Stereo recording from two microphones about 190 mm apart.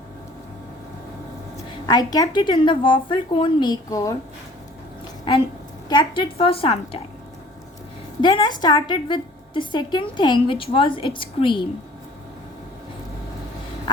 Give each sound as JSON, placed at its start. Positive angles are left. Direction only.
{"t": 1.9, "sound": "a woman's voice", "side_deg": 20}
{"t": 5.9, "sound": "a woman's voice", "side_deg": 25}
{"t": 8.2, "sound": "a woman's voice", "side_deg": 25}